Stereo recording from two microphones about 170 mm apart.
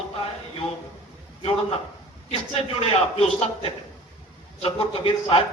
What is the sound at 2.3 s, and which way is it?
A man's voice, 35° left (ahead or behind).